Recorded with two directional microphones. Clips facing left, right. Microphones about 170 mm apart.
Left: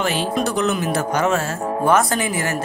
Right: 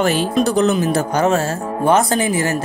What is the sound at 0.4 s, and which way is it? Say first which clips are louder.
Speech: right 6 dB; 30° right (ahead or behind).